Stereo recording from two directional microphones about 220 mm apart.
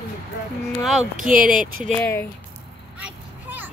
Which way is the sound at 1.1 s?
35° right (ahead or behind).